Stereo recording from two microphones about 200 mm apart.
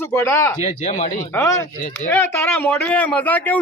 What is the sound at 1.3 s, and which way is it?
A man's voice, 10° left (ahead or behind).